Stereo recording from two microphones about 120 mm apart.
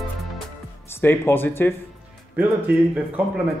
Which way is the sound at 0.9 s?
20° left (ahead or behind).